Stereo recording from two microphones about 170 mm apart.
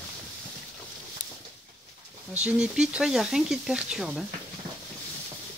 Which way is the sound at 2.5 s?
5° right (ahead or behind).